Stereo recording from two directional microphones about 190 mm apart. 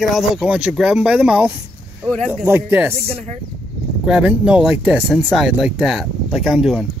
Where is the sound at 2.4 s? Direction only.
10° right (ahead or behind).